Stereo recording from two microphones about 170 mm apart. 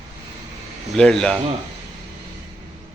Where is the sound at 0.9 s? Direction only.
5° left (ahead or behind).